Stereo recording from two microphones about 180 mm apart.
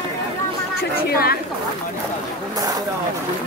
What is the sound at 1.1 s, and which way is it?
Speech, 55° left (ahead or behind).